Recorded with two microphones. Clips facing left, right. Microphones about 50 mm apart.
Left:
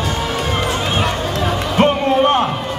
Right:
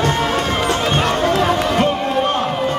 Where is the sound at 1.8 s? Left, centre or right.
Left.